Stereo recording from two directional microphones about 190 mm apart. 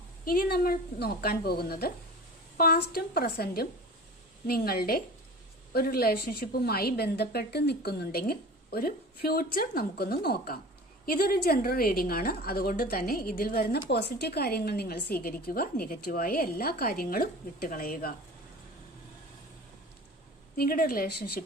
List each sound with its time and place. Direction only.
0.3 s a woman's voice: 55° left (ahead or behind)
20.6 s a woman's voice: 50° left (ahead or behind)